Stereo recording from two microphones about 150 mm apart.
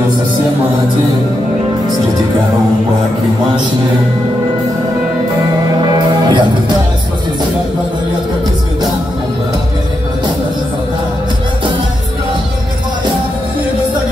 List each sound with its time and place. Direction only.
5.9 s music: 25° right (ahead or behind)